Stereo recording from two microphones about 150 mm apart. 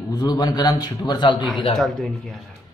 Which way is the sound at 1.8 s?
Centre (ahead or behind).